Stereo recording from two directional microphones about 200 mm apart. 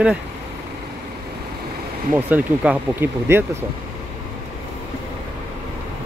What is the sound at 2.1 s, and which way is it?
Speech, 10° right (ahead or behind).